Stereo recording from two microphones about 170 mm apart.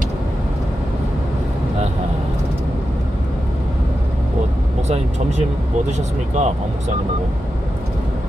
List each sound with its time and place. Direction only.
4.8 s speech: 40° right (ahead or behind)